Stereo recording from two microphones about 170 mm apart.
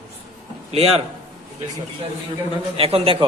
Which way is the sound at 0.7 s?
35° right (ahead or behind).